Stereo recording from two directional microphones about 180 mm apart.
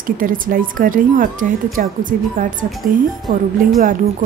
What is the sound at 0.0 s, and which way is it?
Speech, 50° right (ahead or behind).